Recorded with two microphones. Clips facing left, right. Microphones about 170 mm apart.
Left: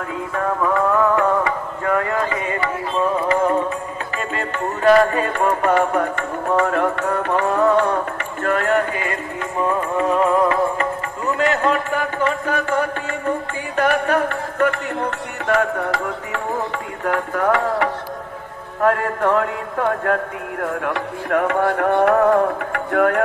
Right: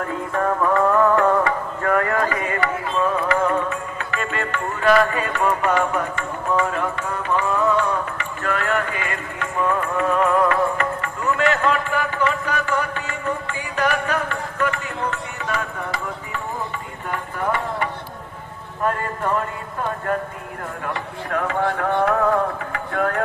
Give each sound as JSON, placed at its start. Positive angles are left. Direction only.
{"t": 0.3, "sound": "music", "side_deg": 0}
{"t": 11.3, "sound": "a sound", "side_deg": 40}
{"t": 18.9, "sound": "a man's voice", "side_deg": 80}
{"t": 20.6, "sound": "speech", "side_deg": 60}